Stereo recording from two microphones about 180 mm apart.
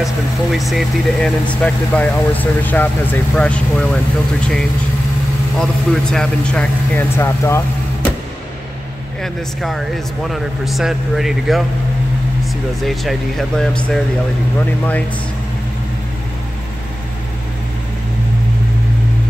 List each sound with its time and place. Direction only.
0.0 s speech: centre (ahead or behind); by 7.6 s 15° left (ahead or behind)
9.2 s speech: centre (ahead or behind)
12.8 s speech: centre (ahead or behind)